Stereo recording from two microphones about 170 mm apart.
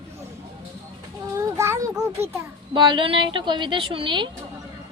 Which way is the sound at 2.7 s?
30° right (ahead or behind).